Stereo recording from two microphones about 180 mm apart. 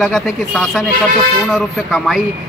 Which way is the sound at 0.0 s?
5° left (ahead or behind).